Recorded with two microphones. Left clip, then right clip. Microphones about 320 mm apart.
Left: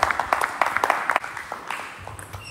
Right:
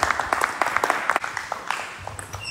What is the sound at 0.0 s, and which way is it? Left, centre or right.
Applause, left.